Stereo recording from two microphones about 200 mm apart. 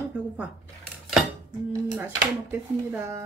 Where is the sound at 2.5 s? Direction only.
10° right (ahead or behind).